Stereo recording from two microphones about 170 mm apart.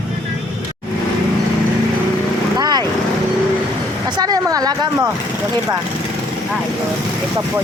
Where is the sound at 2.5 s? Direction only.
25° right (ahead or behind).